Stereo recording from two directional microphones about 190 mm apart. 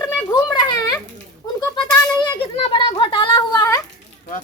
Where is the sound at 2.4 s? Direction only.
30° left (ahead or behind).